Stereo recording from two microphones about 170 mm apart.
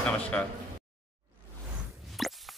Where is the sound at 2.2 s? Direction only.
Centre (ahead or behind).